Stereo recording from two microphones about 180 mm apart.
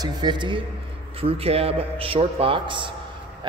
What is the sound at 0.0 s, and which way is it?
A man's voice, 25° right (ahead or behind).